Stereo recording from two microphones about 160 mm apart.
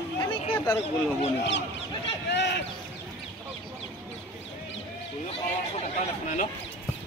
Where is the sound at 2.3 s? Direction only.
90° left.